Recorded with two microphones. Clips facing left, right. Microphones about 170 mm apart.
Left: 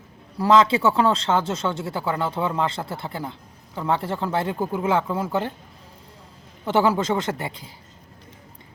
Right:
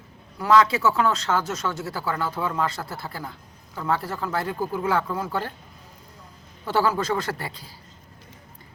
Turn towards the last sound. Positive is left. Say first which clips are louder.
# left 3 dB
turn(degrees=20)  # may be behind; listen again after turning